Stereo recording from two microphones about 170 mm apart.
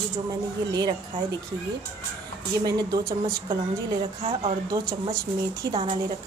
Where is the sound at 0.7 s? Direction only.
25° right (ahead or behind).